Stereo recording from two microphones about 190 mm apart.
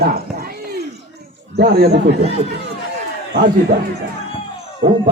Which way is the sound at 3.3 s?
60° right (ahead or behind).